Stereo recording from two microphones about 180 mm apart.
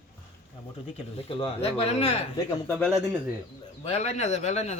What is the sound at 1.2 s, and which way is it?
Speech, 30° left (ahead or behind).